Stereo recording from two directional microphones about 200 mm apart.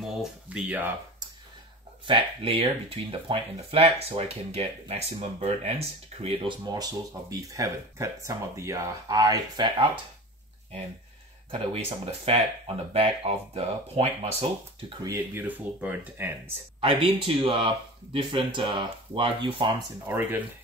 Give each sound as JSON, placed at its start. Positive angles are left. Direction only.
{"t": 0.0, "sound": "speech", "side_deg": 0}
{"t": 2.0, "sound": "speech", "side_deg": -25}
{"t": 11.5, "sound": "speech", "side_deg": -30}
{"t": 14.9, "sound": "speech", "side_deg": -15}
{"t": 16.8, "sound": "speech", "side_deg": -25}
{"t": 20.1, "sound": "speech", "side_deg": -10}